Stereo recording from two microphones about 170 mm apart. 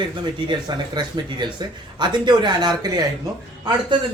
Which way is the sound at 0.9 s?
25° right (ahead or behind).